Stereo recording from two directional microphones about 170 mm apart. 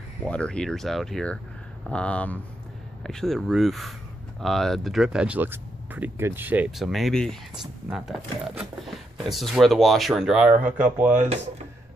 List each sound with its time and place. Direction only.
0.3 s speech: 5° left (ahead or behind)
11.1 s speech: 40° right (ahead or behind)